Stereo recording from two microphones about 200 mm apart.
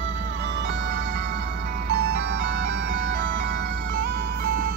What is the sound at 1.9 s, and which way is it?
Music, 55° right (ahead or behind).